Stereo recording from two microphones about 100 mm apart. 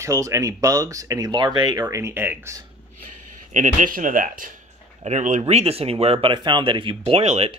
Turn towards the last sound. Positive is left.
turn(degrees=-90)